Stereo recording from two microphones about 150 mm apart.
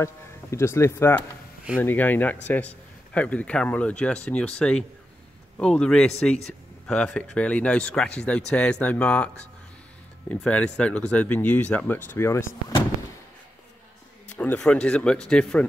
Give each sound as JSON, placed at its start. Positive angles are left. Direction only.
{"t": 0.0, "sound": "a man's voice", "side_deg": 20}
{"t": 14.3, "sound": "speech", "side_deg": 10}